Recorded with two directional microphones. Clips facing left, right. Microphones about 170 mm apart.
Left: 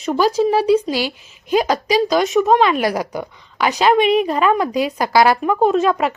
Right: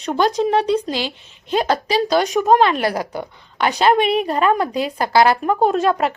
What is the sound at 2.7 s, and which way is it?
Speech, 15° left (ahead or behind).